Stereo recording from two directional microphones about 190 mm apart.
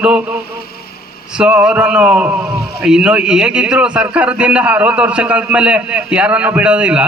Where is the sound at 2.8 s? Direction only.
5° right (ahead or behind).